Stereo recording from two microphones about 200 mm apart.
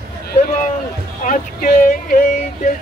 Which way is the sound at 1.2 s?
45° left (ahead or behind).